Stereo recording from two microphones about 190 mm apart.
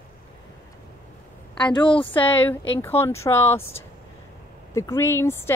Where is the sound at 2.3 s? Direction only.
10° left (ahead or behind).